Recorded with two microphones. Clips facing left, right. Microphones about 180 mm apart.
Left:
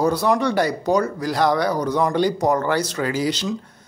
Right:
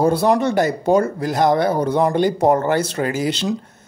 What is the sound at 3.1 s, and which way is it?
Speech, 55° right (ahead or behind).